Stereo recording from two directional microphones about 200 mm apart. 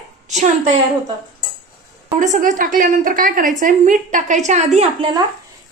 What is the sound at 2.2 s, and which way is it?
A woman's voice, 40° right (ahead or behind).